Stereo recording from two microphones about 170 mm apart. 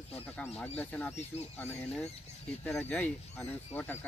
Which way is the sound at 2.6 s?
10° left (ahead or behind).